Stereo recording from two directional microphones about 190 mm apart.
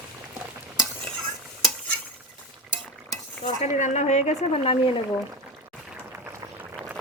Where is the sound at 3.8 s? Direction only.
40° left (ahead or behind).